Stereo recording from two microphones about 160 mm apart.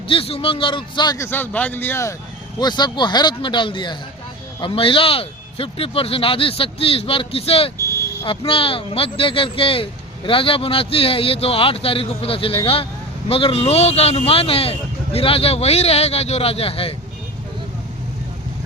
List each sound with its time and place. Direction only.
0.1 s a man's voice: 35° left (ahead or behind); by 2.1 s 15° left (ahead or behind)
2.6 s a man's voice: 25° left (ahead or behind)